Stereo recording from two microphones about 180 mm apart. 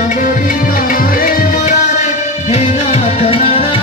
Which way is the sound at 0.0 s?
45° left (ahead or behind).